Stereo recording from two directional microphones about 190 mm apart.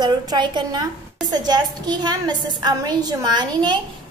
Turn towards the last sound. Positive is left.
turn(degrees=-25)  # may be behind; listen again after turning